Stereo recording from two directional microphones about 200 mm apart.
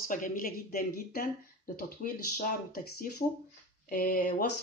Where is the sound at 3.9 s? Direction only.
45° left (ahead or behind).